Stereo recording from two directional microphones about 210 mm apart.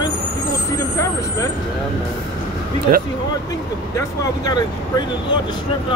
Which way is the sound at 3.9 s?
20° left (ahead or behind).